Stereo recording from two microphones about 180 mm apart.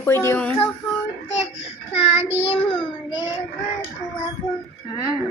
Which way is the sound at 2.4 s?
30° left (ahead or behind).